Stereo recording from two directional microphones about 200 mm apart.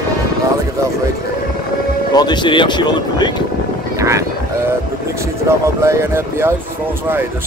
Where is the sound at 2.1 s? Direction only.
20° left (ahead or behind).